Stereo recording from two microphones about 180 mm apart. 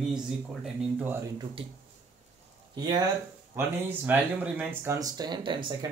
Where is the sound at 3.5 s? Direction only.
10° right (ahead or behind).